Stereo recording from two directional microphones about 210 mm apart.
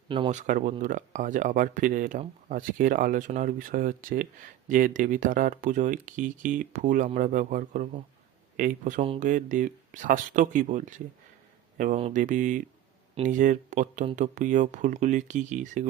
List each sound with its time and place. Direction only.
0.1 s speech: 30° right (ahead or behind)